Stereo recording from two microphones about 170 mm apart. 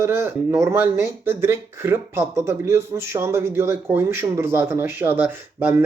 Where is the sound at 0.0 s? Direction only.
15° right (ahead or behind).